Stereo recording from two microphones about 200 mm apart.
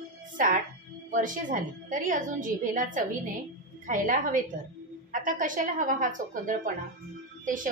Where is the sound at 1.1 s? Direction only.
40° right (ahead or behind).